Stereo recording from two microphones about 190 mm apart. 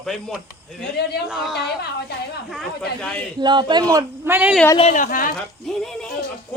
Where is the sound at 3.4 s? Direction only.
25° right (ahead or behind).